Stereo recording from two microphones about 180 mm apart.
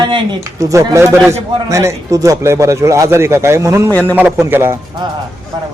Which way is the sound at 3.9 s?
10° left (ahead or behind).